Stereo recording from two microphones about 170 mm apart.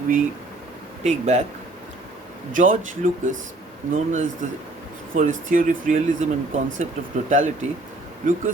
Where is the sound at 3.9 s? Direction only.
50° right (ahead or behind).